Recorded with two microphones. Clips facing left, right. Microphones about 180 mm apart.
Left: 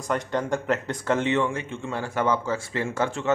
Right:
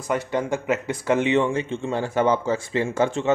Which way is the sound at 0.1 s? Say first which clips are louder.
Right 2 dB; 10° right (ahead or behind).